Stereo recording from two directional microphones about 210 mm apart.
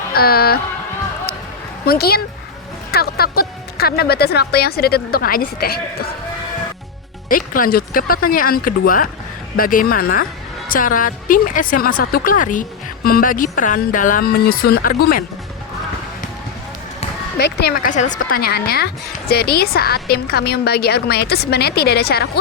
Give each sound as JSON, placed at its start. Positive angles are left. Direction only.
{"t": 0.1, "sound": "speech", "side_deg": 45}
{"t": 1.8, "sound": "speech", "side_deg": 45}
{"t": 7.3, "sound": "a woman's voice", "side_deg": 40}
{"t": 17.3, "sound": "speech", "side_deg": 50}